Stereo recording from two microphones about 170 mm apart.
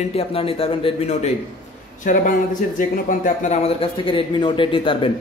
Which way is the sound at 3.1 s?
40° left (ahead or behind).